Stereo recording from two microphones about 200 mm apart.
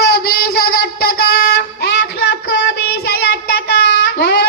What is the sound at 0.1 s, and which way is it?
Child singing, 50° left (ahead or behind).